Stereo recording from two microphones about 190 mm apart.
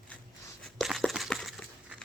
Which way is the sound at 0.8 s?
Centre (ahead or behind).